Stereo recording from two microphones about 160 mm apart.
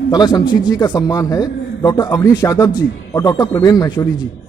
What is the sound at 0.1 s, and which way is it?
A man's voice, 25° left (ahead or behind).